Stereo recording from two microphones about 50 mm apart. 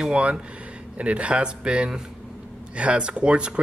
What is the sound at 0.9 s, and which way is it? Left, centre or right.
Speech, right.